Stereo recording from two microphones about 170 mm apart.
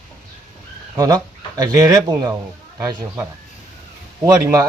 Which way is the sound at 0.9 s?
20° right (ahead or behind).